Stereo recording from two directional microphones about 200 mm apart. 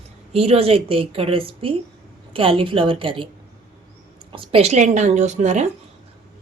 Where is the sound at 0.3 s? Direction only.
30° right (ahead or behind).